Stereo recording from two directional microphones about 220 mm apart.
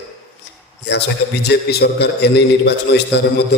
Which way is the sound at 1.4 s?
45° left (ahead or behind).